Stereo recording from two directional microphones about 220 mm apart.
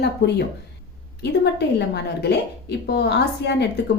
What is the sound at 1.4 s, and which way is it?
A woman's voice, 50° left (ahead or behind).